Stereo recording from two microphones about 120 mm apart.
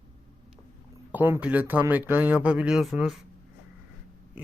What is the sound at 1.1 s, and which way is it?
Speech, 15° right (ahead or behind).